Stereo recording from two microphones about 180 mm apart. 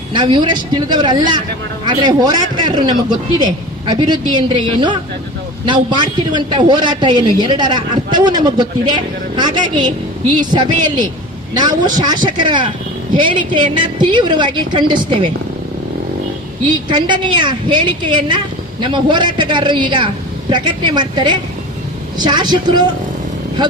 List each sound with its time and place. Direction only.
0.1 s a man's voice: 25° right (ahead or behind)
5.6 s a man's voice: 25° right (ahead or behind)
16.7 s a man's voice: 25° right (ahead or behind)